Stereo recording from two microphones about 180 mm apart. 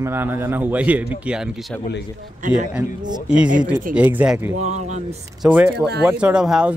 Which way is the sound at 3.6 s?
5° right (ahead or behind).